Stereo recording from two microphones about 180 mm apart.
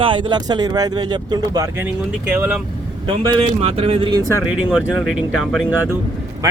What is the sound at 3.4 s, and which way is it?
Speech, 35° right (ahead or behind).